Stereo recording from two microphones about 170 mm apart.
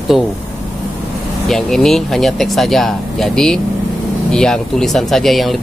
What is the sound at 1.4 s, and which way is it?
Speech, centre (ahead or behind).